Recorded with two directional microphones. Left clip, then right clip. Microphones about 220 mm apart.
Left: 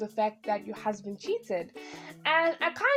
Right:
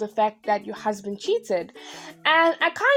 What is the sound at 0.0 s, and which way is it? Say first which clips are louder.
Speech: right 6 dB; 25° right (ahead or behind).